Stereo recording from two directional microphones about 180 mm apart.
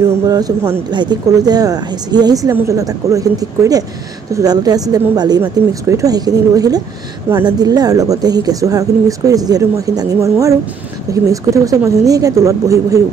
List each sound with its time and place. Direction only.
0.9 s a woman's voice: 25° right (ahead or behind)